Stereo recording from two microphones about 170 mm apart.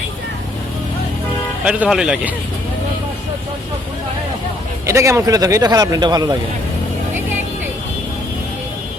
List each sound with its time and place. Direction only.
1.6 s speech: 5° right (ahead or behind)
4.9 s a man's voice: 15° right (ahead or behind)